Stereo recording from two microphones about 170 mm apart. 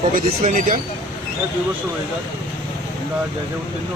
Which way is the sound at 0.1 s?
50° right (ahead or behind).